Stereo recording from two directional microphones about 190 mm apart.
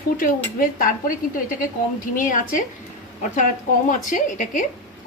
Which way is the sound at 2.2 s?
45° left (ahead or behind).